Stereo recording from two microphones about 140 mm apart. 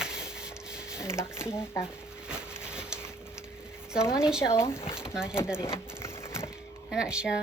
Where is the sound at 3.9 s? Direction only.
5° right (ahead or behind).